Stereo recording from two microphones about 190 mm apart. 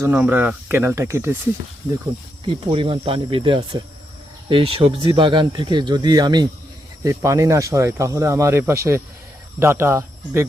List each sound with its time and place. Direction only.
0.0 s speech: 10° right (ahead or behind)
2.4 s speech: 30° right (ahead or behind)